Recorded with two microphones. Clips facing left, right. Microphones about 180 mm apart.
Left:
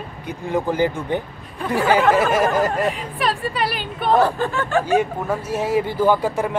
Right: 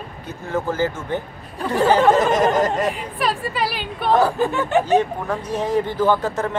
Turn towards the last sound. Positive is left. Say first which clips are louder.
# left 1 dB
turn(degrees=10)  # may be behind; listen again after turning